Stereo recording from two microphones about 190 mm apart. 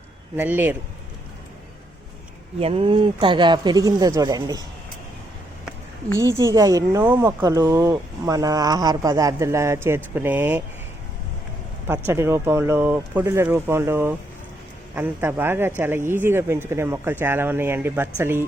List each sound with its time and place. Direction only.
0.3 s speech: 10° right (ahead or behind)
2.6 s speech: 30° right (ahead or behind)
6.1 s speech: 15° right (ahead or behind)
11.9 s speech: 15° right (ahead or behind)